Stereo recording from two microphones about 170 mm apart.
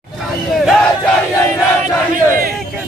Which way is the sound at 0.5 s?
Centre (ahead or behind).